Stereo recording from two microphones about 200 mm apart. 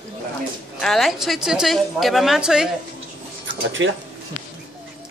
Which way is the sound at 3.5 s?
70° right (ahead or behind).